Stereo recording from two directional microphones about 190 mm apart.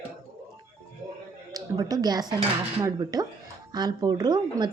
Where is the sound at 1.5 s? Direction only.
20° right (ahead or behind).